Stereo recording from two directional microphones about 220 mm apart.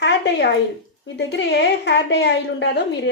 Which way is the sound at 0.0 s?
50° left (ahead or behind).